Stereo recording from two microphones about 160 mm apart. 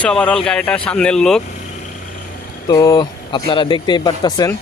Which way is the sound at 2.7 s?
25° left (ahead or behind).